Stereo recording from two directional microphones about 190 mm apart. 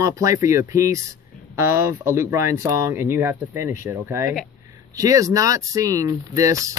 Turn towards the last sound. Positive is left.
turn(degrees=-15)  # may be behind; listen again after turning